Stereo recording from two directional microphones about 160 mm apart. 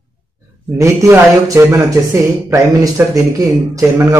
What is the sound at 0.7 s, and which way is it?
A man's voice, 20° right (ahead or behind).